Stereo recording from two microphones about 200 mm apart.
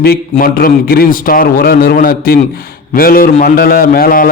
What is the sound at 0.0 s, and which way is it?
A man's voice, 50° left (ahead or behind).